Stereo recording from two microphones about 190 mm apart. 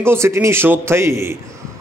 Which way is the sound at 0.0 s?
15° right (ahead or behind).